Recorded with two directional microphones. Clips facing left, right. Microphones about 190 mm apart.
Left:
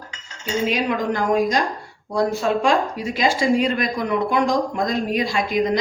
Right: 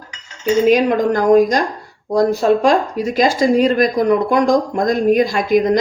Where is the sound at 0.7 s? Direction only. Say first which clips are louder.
Right 8 dB; 45° right (ahead or behind).